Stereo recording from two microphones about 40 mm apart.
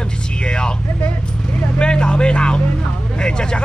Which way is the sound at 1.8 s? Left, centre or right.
Left.